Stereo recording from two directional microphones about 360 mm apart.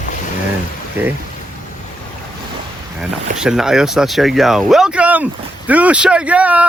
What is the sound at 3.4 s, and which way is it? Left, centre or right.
Speech, centre.